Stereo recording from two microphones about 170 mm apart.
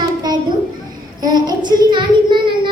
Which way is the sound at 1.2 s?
25° right (ahead or behind).